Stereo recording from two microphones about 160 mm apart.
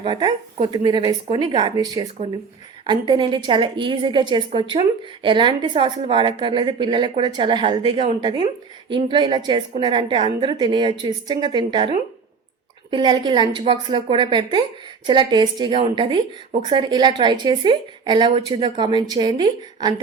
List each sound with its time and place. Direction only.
0.0 s a woman's voice: 30° right (ahead or behind)
16.5 s speech: 45° right (ahead or behind)
16.7 s a woman's voice: 30° right (ahead or behind)